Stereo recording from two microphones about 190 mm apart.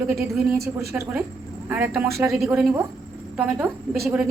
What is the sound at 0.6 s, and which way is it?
Speech, 55° right (ahead or behind).